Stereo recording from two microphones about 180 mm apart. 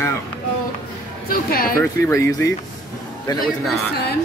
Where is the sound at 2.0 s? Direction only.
15° left (ahead or behind).